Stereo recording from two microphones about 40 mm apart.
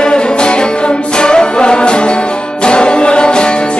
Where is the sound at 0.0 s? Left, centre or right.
Left.